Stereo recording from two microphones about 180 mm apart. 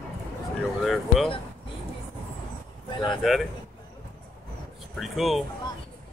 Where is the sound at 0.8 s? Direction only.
Centre (ahead or behind).